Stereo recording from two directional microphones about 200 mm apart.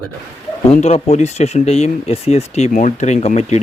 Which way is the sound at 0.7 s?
35° left (ahead or behind).